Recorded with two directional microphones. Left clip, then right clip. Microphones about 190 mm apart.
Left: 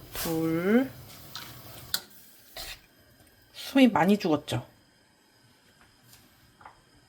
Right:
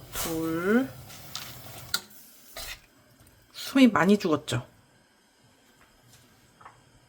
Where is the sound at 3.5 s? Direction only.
5° right (ahead or behind).